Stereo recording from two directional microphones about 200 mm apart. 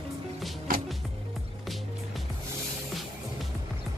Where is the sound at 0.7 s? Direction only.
45° right (ahead or behind).